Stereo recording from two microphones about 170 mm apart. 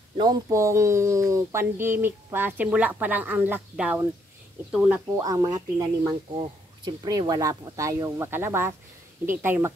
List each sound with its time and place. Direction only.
0.2 s speech: 20° right (ahead or behind)